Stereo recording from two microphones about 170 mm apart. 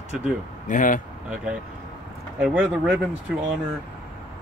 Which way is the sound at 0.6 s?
50° left (ahead or behind).